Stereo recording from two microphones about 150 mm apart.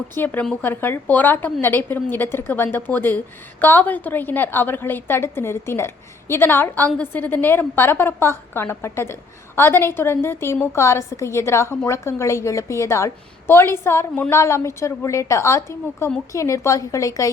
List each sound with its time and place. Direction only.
0.1 s a woman's voice: 15° left (ahead or behind)